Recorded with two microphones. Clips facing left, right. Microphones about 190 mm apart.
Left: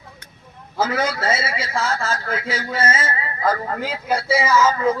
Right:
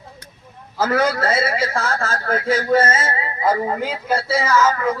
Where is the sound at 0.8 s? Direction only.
60° right (ahead or behind).